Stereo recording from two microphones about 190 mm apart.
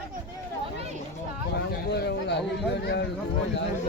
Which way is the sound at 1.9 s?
60° left (ahead or behind).